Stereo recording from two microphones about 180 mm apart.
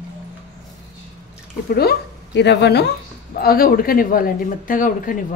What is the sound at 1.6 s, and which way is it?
Speech, 60° left (ahead or behind).